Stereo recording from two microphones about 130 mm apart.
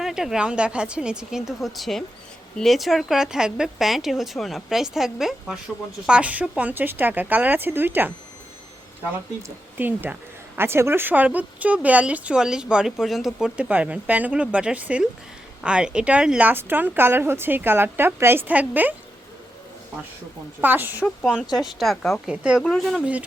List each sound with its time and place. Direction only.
0.0 s speech: 5° right (ahead or behind)
9.7 s speech: 15° right (ahead or behind)
20.6 s speech: 15° right (ahead or behind)
21.5 s speech: centre (ahead or behind)